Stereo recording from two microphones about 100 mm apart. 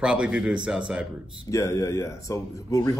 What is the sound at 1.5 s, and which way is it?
A man's voice, 30° left (ahead or behind).